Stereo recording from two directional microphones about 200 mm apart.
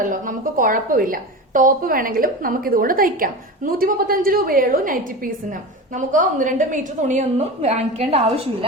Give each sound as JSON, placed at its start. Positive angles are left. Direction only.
{"t": 0.0, "sound": "a woman's voice", "side_deg": -45}